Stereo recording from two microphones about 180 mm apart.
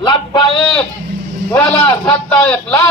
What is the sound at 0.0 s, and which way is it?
Speech, 25° left (ahead or behind).